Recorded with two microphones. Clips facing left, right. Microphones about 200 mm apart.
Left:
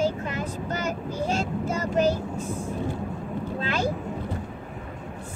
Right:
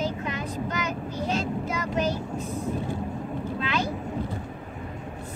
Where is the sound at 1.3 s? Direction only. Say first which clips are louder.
Even; 45° left (ahead or behind).